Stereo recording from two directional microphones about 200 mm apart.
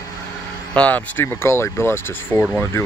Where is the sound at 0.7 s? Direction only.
5° left (ahead or behind).